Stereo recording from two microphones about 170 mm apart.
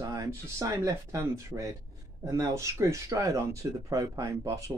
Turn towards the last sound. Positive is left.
turn(degrees=-20)  # may be behind; listen again after turning